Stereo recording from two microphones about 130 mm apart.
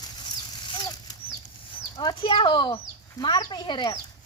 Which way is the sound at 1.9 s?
35° left (ahead or behind).